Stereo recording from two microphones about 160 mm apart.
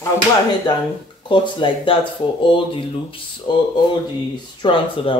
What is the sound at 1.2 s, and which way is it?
Speech, 30° left (ahead or behind).